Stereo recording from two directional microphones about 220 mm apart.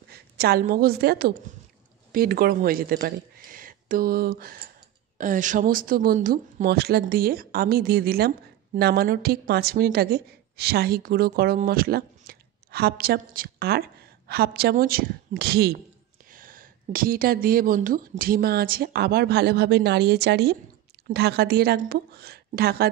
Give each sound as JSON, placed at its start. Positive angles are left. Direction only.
{"t": 0.1, "sound": "a woman's voice", "side_deg": -45}